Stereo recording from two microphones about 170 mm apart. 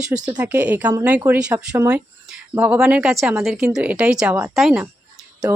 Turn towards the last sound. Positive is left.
turn(degrees=-15)  # may be behind; listen again after turning